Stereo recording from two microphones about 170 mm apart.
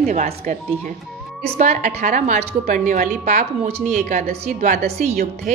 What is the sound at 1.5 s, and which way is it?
A woman's voice, 45° right (ahead or behind).